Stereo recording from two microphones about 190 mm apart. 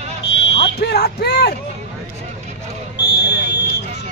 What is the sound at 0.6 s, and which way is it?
Speech, 60° left (ahead or behind).